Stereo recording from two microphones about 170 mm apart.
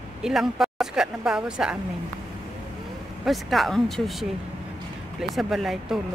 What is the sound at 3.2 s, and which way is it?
Speech, centre (ahead or behind).